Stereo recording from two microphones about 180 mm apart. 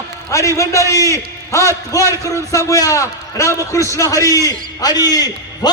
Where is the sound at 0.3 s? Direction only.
15° left (ahead or behind).